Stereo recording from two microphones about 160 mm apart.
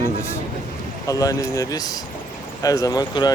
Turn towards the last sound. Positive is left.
turn(degrees=25)  # may be behind; listen again after turning